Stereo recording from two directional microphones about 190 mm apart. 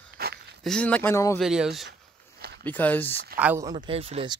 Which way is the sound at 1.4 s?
Centre (ahead or behind).